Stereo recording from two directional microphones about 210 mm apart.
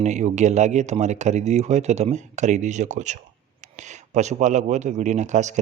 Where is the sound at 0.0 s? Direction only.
35° right (ahead or behind).